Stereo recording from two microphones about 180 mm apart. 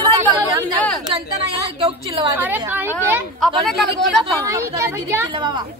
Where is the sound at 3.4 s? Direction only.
Centre (ahead or behind).